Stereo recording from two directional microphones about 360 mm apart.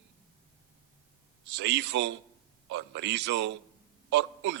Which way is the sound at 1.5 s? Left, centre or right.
Right.